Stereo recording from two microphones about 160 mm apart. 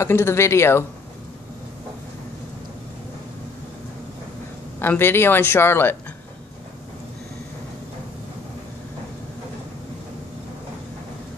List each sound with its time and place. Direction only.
0.0 s speech: 15° left (ahead or behind)
4.7 s speech: 15° left (ahead or behind)